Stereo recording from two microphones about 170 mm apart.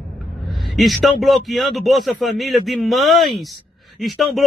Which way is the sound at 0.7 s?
Centre (ahead or behind).